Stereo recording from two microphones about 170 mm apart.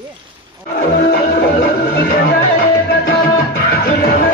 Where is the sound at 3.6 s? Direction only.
65° left (ahead or behind).